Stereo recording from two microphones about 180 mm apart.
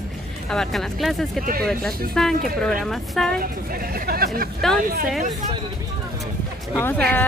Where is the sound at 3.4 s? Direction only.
55° right (ahead or behind).